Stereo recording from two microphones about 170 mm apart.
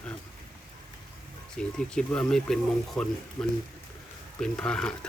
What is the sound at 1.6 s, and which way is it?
Speech, 5° left (ahead or behind).